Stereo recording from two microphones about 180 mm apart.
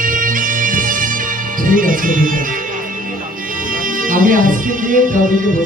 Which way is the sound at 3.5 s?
50° right (ahead or behind).